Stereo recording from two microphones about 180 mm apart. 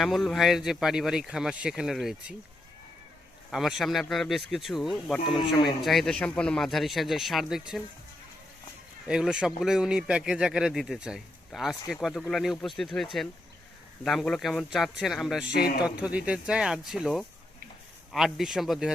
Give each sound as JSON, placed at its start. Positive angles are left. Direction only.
{"t": 0.0, "sound": "speech", "side_deg": 0}
{"t": 3.5, "sound": "speech", "side_deg": 0}
{"t": 9.0, "sound": "speech", "side_deg": -5}
{"t": 15.5, "sound": "a man's voice", "side_deg": 60}
{"t": 15.8, "sound": "speech", "side_deg": -5}